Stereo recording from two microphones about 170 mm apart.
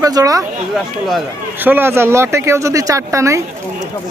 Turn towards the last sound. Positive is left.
turn(degrees=-15)  # may be behind; listen again after turning